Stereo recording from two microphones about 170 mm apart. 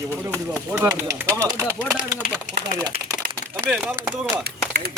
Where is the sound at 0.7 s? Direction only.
15° right (ahead or behind).